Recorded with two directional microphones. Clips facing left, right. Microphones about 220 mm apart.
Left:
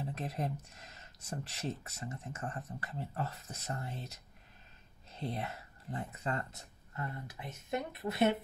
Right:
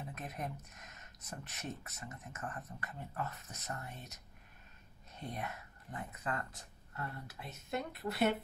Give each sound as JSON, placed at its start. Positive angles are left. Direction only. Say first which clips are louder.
{"t": 0.0, "sound": "speech", "louder": "left 5 dB", "side_deg": 30}